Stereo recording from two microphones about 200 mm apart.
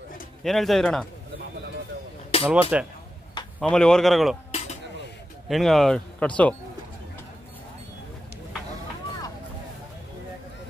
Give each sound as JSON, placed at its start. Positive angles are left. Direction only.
{"t": 0.4, "sound": "speech", "side_deg": 0}
{"t": 2.4, "sound": "speech", "side_deg": -5}
{"t": 3.5, "sound": "speech", "side_deg": 5}
{"t": 4.5, "sound": "cutlery", "side_deg": 35}
{"t": 5.5, "sound": "speech", "side_deg": 0}